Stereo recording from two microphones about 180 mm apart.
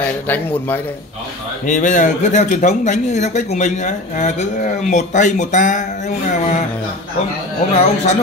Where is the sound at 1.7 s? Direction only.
45° left (ahead or behind).